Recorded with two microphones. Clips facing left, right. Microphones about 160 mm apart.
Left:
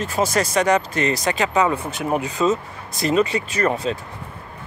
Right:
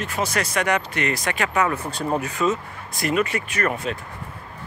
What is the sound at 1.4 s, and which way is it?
Speech, 20° left (ahead or behind).